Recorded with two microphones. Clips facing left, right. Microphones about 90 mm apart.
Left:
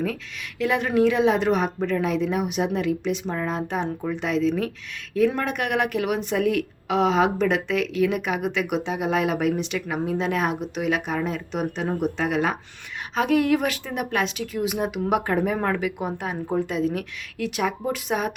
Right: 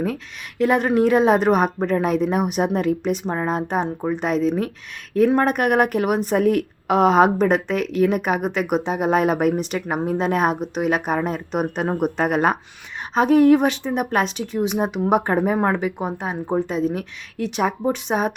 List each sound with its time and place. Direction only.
0.6 s a woman's voice: 40° right (ahead or behind)
11.8 s a woman's voice: 55° right (ahead or behind)
13.1 s speech: 35° right (ahead or behind)